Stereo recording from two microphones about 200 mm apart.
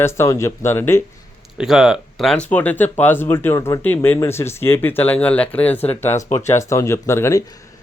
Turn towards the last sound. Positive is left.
turn(degrees=15)  # may be behind; listen again after turning